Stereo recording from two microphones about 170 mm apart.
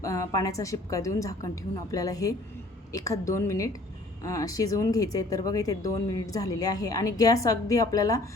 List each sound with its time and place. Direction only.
0.0 s a woman's voice: 20° left (ahead or behind)